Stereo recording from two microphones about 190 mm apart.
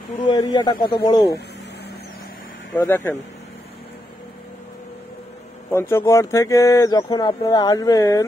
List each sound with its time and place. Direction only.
0.3 s speech: 20° left (ahead or behind)
2.8 s speech: 10° left (ahead or behind)
5.7 s speech: 15° left (ahead or behind)